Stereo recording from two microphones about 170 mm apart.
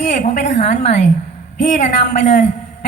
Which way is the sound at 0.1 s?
45° left (ahead or behind).